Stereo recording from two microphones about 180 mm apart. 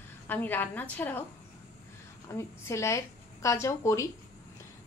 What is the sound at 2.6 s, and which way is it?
A woman's voice, 15° left (ahead or behind).